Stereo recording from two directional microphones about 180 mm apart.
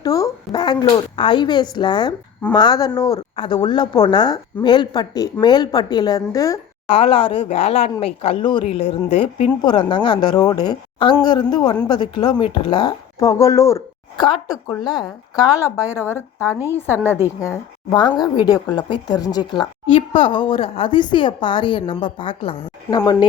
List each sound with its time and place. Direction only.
0.0 s a sound: 20° left (ahead or behind)
1.7 s a woman's voice: 25° left (ahead or behind)
6.9 s a woman's voice: 30° left (ahead or behind); by 16.2 s 15° left (ahead or behind)
16.4 s a woman's voice: 10° right (ahead or behind)
16.7 s a woman's voice: 10° left (ahead or behind)